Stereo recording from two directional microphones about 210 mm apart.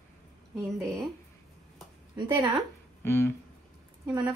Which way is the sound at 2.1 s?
20° right (ahead or behind).